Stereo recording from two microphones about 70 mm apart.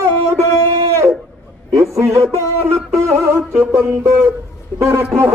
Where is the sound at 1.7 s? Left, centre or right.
Right.